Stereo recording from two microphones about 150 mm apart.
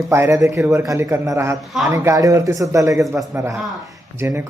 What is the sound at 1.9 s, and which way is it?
A man's voice, 20° right (ahead or behind).